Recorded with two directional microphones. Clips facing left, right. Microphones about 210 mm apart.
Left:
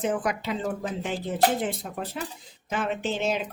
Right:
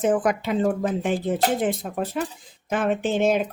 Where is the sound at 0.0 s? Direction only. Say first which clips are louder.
Right 6 dB; 50° right (ahead or behind).